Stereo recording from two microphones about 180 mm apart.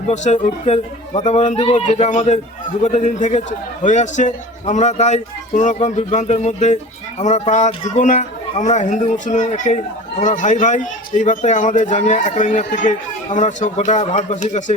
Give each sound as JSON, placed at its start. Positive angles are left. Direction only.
{"t": 0.1, "sound": "a man's voice", "side_deg": 40}